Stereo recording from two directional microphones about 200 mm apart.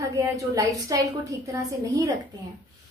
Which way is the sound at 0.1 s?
15° right (ahead or behind).